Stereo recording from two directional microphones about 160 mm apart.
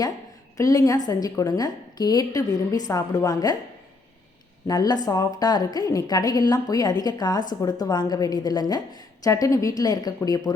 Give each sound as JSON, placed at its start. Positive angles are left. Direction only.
{"t": 0.5, "sound": "a woman's voice", "side_deg": 20}
{"t": 4.6, "sound": "a woman's voice", "side_deg": 25}